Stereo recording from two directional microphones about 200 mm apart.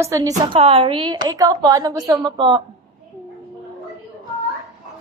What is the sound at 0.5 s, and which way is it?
A woman's voice, 30° right (ahead or behind).